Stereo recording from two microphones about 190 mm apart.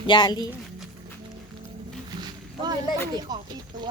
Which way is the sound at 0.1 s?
20° left (ahead or behind).